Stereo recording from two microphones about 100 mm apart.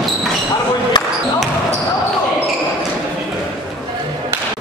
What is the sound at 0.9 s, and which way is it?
Basketball bounce, 45° left (ahead or behind).